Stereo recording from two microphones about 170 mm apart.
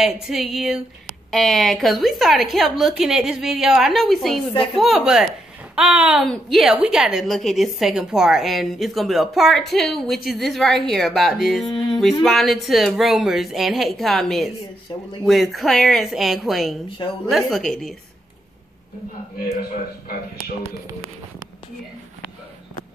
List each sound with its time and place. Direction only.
0.0 s a woman's voice: centre (ahead or behind)
14.9 s speech: 25° left (ahead or behind)
15.2 s a woman's voice: centre (ahead or behind)